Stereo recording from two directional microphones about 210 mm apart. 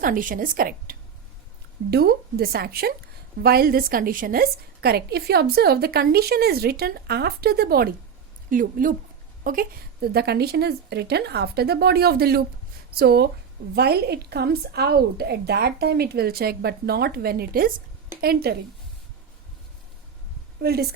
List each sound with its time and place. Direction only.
0.0 s a woman's voice: 40° right (ahead or behind)
20.6 s a woman's voice: 50° right (ahead or behind)